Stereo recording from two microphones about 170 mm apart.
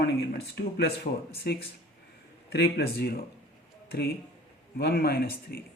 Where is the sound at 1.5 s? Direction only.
70° left (ahead or behind).